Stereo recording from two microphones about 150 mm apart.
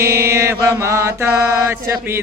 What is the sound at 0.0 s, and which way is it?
Mantra, 15° right (ahead or behind).